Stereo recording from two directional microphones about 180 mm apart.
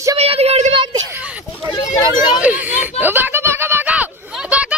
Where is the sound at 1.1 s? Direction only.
10° right (ahead or behind).